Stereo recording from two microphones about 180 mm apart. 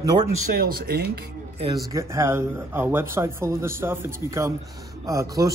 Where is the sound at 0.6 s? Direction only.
55° right (ahead or behind).